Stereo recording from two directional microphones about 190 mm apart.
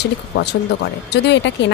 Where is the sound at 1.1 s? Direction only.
65° left (ahead or behind).